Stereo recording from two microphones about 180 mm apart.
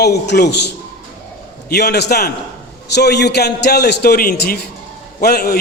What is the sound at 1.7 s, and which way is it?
A man's voice, 65° left (ahead or behind).